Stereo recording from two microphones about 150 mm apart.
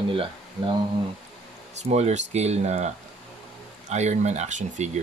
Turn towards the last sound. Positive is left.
turn(degrees=-50)  # may be behind; listen again after turning